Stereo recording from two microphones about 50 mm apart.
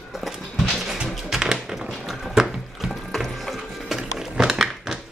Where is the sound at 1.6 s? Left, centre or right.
Centre.